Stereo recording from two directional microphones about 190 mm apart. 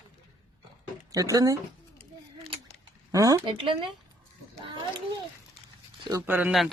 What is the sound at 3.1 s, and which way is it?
Speech, 15° right (ahead or behind).